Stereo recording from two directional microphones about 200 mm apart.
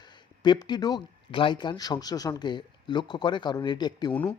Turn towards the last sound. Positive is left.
turn(degrees=20)  # may be behind; listen again after turning